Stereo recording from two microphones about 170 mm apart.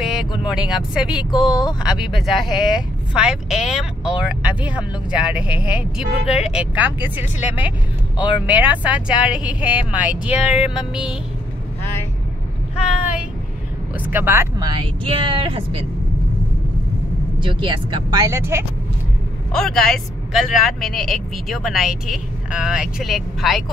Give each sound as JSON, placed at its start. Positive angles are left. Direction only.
{"t": 0.0, "sound": "vehicle", "side_deg": 0}
{"t": 0.4, "sound": "speech", "side_deg": -5}
{"t": 1.3, "sound": "speech", "side_deg": 25}
{"t": 2.0, "sound": "speech", "side_deg": 0}
{"t": 6.2, "sound": "speech", "side_deg": 40}
{"t": 6.5, "sound": "speech", "side_deg": -10}
{"t": 13.9, "sound": "speech", "side_deg": -10}
{"t": 14.7, "sound": "speech", "side_deg": -30}
{"t": 17.4, "sound": "speech", "side_deg": -30}
{"t": 19.5, "sound": "speech", "side_deg": 5}